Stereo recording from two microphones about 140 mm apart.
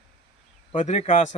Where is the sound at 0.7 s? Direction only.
55° left (ahead or behind).